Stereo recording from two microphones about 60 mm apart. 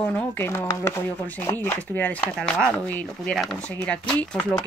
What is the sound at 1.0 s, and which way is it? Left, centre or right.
Speech, left.